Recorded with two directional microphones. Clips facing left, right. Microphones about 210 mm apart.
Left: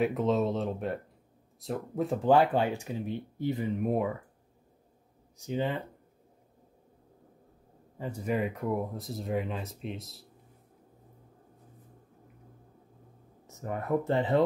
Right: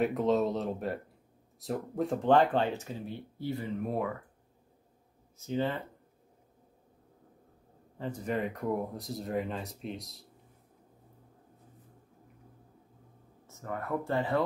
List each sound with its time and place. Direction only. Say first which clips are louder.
0.0 s speech: even; centre (ahead or behind); by 4.1 s 15° left (ahead or behind)
5.4 s speech: even; 15° left (ahead or behind)
8.0 s speech: left 2 dB; 10° left (ahead or behind)
13.5 s speech: left 5 dB; 15° left (ahead or behind)